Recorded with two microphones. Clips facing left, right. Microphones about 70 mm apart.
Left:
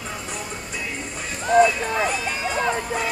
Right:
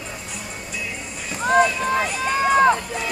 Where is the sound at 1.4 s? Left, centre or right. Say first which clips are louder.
Left 1 dB; right.